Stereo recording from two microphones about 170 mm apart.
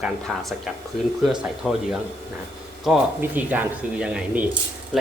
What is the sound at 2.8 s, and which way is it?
Speech, 5° right (ahead or behind).